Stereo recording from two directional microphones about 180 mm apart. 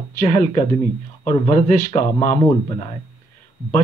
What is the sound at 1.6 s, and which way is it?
Speech, 40° left (ahead or behind).